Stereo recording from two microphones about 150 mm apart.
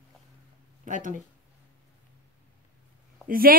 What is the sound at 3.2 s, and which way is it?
Speech, 75° right (ahead or behind).